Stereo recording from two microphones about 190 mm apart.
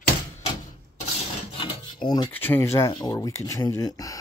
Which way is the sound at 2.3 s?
10° left (ahead or behind).